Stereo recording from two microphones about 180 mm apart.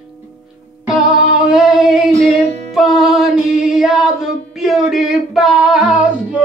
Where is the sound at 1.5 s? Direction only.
Centre (ahead or behind).